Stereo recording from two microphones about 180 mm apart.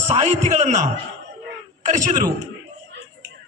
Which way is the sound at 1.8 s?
45° right (ahead or behind).